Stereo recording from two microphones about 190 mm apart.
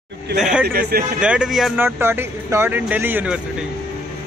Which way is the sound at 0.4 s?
5° right (ahead or behind).